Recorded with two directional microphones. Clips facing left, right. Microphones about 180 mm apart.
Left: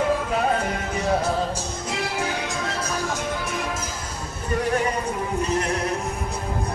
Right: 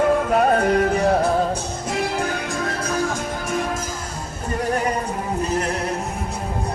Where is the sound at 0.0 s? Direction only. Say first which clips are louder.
Right 5 dB; 55° right (ahead or behind).